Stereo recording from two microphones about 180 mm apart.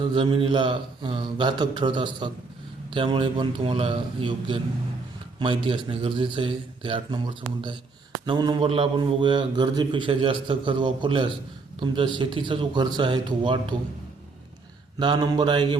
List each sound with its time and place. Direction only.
0.0 s a man's voice: 25° right (ahead or behind)
8.2 s a man's voice: 25° right (ahead or behind)
14.9 s a man's voice: 25° right (ahead or behind)